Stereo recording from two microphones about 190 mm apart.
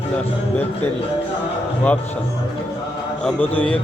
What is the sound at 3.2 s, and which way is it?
Speech, 10° left (ahead or behind).